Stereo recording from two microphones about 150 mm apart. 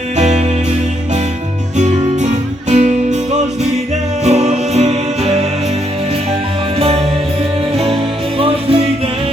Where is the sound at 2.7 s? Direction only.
50° right (ahead or behind).